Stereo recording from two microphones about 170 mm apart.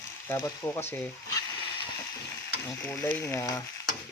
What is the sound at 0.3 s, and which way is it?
Stir, 15° left (ahead or behind).